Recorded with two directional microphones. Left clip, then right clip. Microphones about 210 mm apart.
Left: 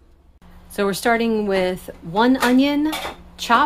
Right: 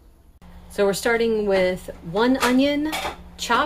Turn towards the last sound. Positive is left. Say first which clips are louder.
# left 4 dB
turn(degrees=20)  # may be behind; listen again after turning